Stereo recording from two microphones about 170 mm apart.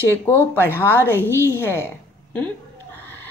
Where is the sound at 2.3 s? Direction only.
10° left (ahead or behind).